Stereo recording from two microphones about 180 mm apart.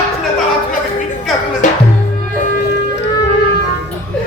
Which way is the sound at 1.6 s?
45° left (ahead or behind).